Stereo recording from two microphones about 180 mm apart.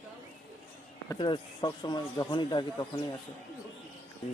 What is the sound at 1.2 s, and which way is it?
Speech, 25° left (ahead or behind).